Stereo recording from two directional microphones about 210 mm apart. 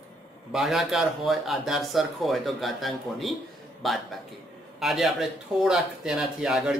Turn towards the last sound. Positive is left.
turn(degrees=-5)  # may be behind; listen again after turning